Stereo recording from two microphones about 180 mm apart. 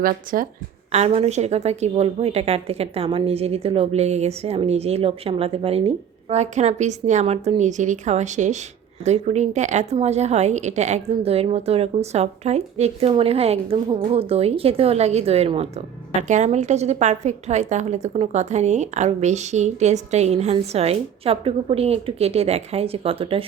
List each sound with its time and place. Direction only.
0.0 s speech: 50° right (ahead or behind)
0.9 s a woman's voice: 35° right (ahead or behind)